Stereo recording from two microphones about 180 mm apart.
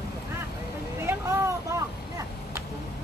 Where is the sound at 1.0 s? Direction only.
15° right (ahead or behind).